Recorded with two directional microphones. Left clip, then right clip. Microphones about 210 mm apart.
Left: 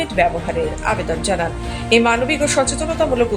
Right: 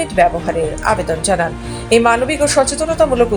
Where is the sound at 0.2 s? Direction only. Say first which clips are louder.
Right 4 dB; 15° right (ahead or behind).